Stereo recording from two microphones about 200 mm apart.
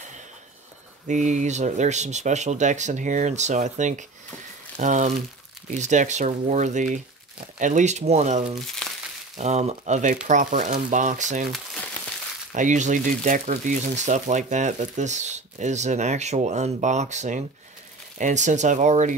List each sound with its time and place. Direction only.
1.0 s speech: 35° right (ahead or behind)
8.8 s crumpling: 5° left (ahead or behind)
9.4 s speech: 35° right (ahead or behind)
12.5 s speech: 40° right (ahead or behind)